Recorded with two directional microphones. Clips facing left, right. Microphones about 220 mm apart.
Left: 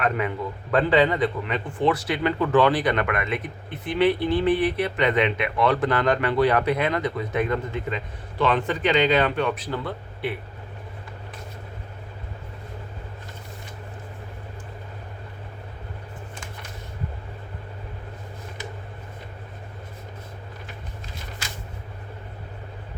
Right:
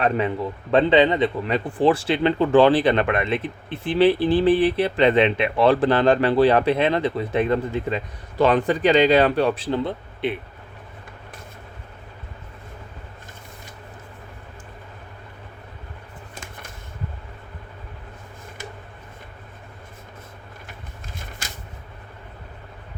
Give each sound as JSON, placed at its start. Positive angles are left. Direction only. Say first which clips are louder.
{"t": 0.0, "sound": "speech", "louder": "right 3 dB", "side_deg": -30}
{"t": 1.5, "sound": "speech", "louder": "right 4 dB", "side_deg": -35}